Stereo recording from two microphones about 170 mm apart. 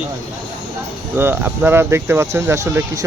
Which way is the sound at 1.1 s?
15° right (ahead or behind).